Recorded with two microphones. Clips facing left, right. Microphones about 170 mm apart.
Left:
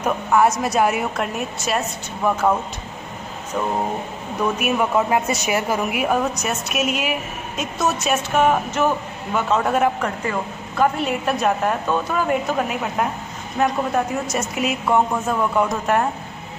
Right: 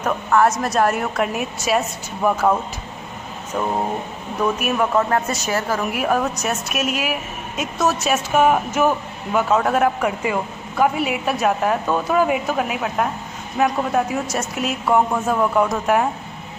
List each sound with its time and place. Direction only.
0.0 s a woman's voice: 5° left (ahead or behind)
4.6 s speech: 5° left (ahead or behind)
5.9 s a woman's voice: centre (ahead or behind)